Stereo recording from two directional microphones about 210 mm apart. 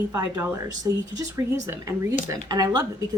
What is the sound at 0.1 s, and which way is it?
A woman's voice, 15° right (ahead or behind).